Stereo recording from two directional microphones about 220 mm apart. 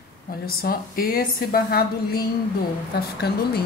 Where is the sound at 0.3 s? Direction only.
45° left (ahead or behind).